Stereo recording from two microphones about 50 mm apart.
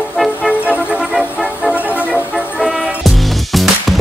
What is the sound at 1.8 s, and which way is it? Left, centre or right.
Music, left.